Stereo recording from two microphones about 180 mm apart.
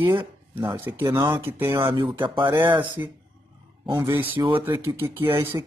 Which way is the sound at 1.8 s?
30° right (ahead or behind).